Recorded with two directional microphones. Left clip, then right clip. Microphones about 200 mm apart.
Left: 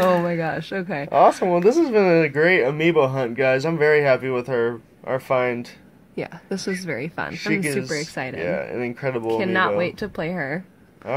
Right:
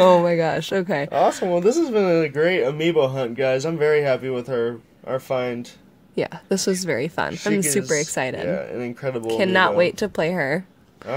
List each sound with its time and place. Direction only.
0.0 s speech: 40° right (ahead or behind)
1.1 s speech: centre (ahead or behind)
6.1 s speech: 45° right (ahead or behind)
8.4 s speech: 5° right (ahead or behind)
9.4 s speech: 50° right (ahead or behind)